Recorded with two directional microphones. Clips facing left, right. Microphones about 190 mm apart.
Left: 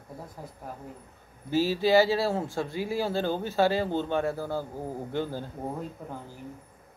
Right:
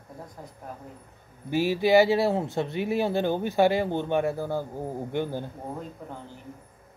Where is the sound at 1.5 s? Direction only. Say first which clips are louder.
Right 2 dB; 15° right (ahead or behind).